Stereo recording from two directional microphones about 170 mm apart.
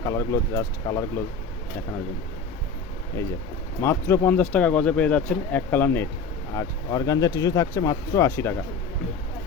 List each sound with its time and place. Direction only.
0.0 s speech: 15° left (ahead or behind)
3.8 s speech: 15° left (ahead or behind)